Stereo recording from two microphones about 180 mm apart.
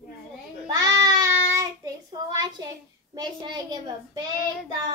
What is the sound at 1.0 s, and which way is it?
Child singing, 20° right (ahead or behind).